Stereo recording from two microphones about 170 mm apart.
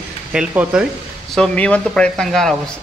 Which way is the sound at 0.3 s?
5° right (ahead or behind).